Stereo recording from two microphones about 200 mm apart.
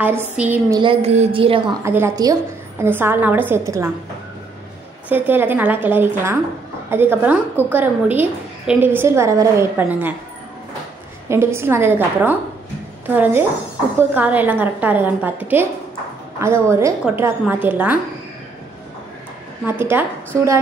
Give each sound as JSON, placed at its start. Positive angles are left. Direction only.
{"t": 0.0, "sound": "a woman's voice", "side_deg": -10}
{"t": 0.7, "sound": "a woman's voice", "side_deg": -30}
{"t": 1.9, "sound": "a woman's voice", "side_deg": -15}
{"t": 5.1, "sound": "a woman's voice", "side_deg": -10}
{"t": 11.2, "sound": "a woman's voice", "side_deg": -15}
{"t": 19.6, "sound": "a woman's voice", "side_deg": -10}